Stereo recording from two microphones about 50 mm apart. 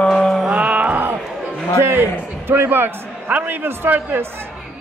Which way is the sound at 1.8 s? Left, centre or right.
Right.